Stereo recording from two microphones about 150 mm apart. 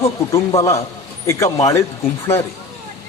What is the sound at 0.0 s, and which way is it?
Speech, 20° left (ahead or behind).